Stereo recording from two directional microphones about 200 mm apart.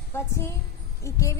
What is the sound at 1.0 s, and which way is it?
Speech, 15° left (ahead or behind).